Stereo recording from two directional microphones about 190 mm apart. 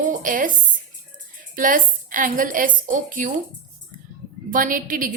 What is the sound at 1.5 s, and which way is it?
A woman's voice, 45° right (ahead or behind).